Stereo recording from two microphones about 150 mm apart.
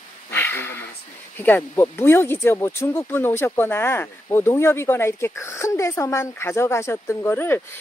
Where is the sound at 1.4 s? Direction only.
15° left (ahead or behind).